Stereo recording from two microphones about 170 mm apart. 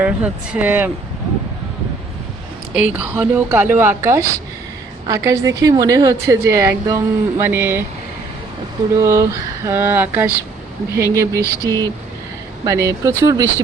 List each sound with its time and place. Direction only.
0.0 s a woman's voice: 10° right (ahead or behind)
2.7 s a woman's voice: 10° right (ahead or behind)
9.0 s a woman's voice: 20° right (ahead or behind)
11.3 s a sound: 15° left (ahead or behind)
12.6 s a woman's voice: 20° right (ahead or behind)